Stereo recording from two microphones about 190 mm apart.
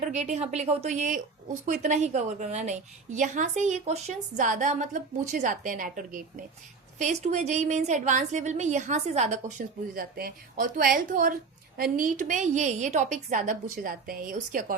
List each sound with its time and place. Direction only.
0.0 s a woman's voice: 40° right (ahead or behind)